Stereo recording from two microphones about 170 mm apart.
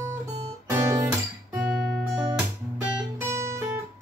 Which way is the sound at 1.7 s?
5° right (ahead or behind).